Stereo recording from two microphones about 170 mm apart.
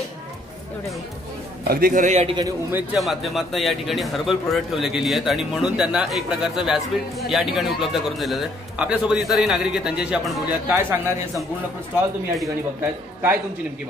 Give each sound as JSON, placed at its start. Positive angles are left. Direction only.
{"t": 1.6, "sound": "a man's voice", "side_deg": -60}
{"t": 2.7, "sound": "speech", "side_deg": -5}
{"t": 10.7, "sound": "a man's voice", "side_deg": -15}
{"t": 12.4, "sound": "a man's voice", "side_deg": -10}